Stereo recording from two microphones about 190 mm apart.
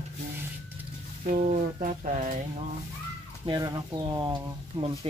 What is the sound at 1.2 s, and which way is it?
Speech, 45° right (ahead or behind).